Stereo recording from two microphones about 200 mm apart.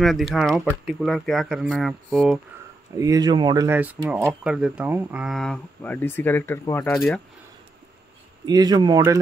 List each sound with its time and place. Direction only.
0.0 s speech: centre (ahead or behind)
3.0 s speech: 20° right (ahead or behind); by 7.1 s 15° left (ahead or behind)
8.5 s speech: 20° right (ahead or behind)